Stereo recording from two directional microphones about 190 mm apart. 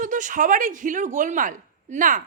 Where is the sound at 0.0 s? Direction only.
40° right (ahead or behind).